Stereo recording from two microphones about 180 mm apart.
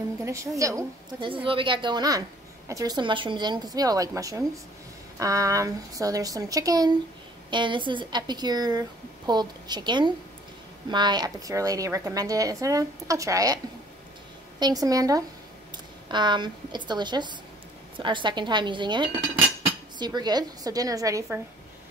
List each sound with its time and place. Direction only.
0.2 s a woman's voice: 15° right (ahead or behind)
1.3 s a woman's voice: 30° right (ahead or behind)
14.6 s a woman's voice: 20° right (ahead or behind)